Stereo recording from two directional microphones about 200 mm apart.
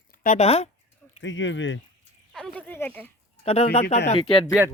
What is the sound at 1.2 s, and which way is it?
Speech, 70° left (ahead or behind).